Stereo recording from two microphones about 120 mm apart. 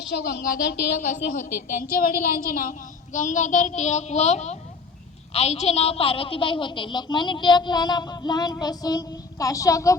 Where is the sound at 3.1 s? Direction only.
90° left.